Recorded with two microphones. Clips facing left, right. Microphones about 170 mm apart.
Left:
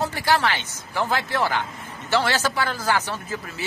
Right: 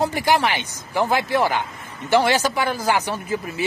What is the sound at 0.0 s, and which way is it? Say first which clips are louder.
Speech: right 3 dB; 15° right (ahead or behind).